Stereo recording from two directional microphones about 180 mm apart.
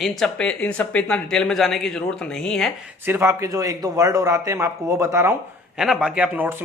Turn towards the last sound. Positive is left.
turn(degrees=-10)  # may be behind; listen again after turning